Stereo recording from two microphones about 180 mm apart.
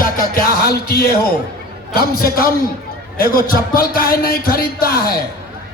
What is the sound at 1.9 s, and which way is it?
Speech, 55° left (ahead or behind).